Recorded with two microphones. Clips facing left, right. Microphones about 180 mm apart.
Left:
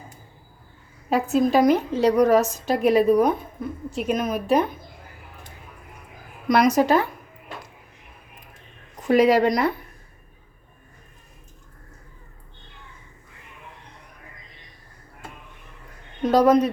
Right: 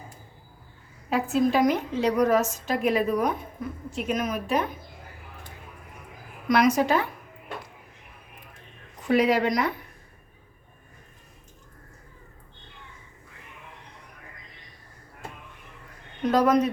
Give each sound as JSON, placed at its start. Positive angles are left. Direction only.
{"t": 1.1, "sound": "a woman's voice", "side_deg": 40}
{"t": 6.5, "sound": "a woman's voice", "side_deg": 40}
{"t": 9.0, "sound": "a woman's voice", "side_deg": 40}
{"t": 16.2, "sound": "a woman's voice", "side_deg": 30}